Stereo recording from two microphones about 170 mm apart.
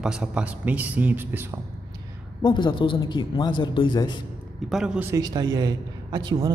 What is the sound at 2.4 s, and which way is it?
A man's voice, 25° left (ahead or behind).